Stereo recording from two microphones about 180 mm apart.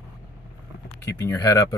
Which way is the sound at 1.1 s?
15° left (ahead or behind).